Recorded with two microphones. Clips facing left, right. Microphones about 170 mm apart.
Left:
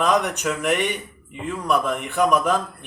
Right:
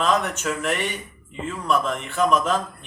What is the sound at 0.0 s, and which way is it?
Speech, 15° left (ahead or behind).